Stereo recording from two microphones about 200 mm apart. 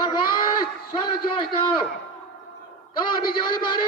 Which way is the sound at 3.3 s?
25° left (ahead or behind).